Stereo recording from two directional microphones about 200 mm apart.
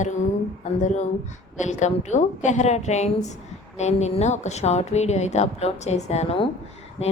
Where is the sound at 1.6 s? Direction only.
35° left (ahead or behind).